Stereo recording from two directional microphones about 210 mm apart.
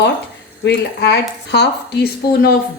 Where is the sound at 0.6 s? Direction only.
55° left (ahead or behind).